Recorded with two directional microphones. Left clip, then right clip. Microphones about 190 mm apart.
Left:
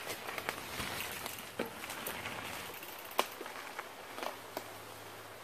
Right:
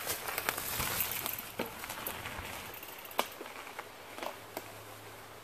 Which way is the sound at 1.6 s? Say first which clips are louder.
Even; 5° right (ahead or behind).